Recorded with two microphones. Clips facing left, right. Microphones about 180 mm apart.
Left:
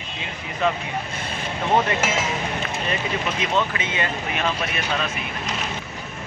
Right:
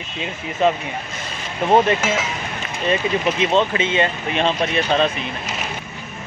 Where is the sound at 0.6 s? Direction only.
20° right (ahead or behind).